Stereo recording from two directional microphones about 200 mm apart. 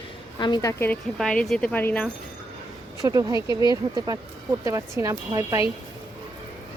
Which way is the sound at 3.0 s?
15° right (ahead or behind).